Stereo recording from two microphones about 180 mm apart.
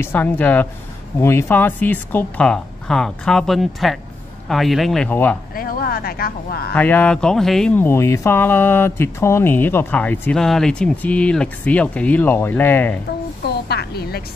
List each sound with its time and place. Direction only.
0.0 s speech: 10° left (ahead or behind)
5.6 s a sound: 55° left (ahead or behind)
6.7 s speech: 10° left (ahead or behind)
13.5 s speech: 65° left (ahead or behind)